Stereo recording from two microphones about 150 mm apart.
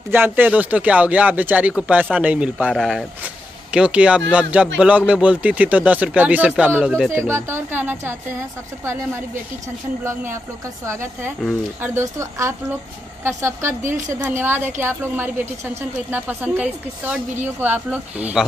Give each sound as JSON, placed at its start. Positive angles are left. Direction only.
{"t": 0.1, "sound": "a woman's voice", "side_deg": -15}